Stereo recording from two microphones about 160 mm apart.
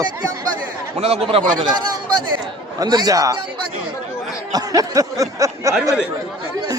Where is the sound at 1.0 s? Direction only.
40° right (ahead or behind).